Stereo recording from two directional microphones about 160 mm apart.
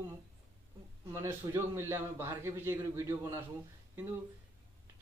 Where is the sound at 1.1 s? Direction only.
15° right (ahead or behind).